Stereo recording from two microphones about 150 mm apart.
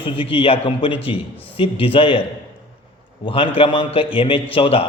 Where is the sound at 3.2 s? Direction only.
35° left (ahead or behind).